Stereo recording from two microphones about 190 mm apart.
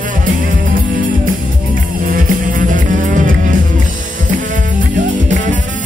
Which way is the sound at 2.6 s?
45° right (ahead or behind).